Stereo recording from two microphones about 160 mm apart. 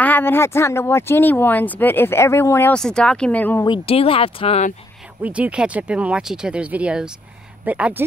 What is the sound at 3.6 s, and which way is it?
Speech, 35° left (ahead or behind).